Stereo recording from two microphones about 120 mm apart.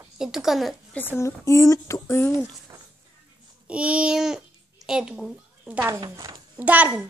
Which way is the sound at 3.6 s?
10° right (ahead or behind).